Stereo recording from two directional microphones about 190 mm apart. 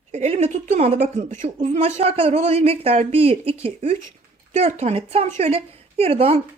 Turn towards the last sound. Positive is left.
turn(degrees=-30)  # may be behind; listen again after turning